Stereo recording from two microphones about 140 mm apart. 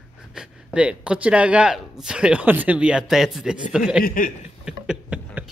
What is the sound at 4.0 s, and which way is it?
Speech, 80° left.